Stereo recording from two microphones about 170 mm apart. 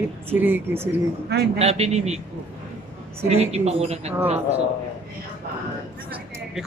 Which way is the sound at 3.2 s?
40° right (ahead or behind).